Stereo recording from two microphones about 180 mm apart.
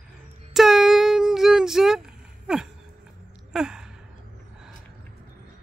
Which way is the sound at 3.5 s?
5° right (ahead or behind).